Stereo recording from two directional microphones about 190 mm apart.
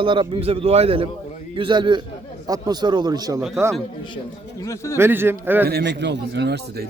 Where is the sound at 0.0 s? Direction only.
25° right (ahead or behind).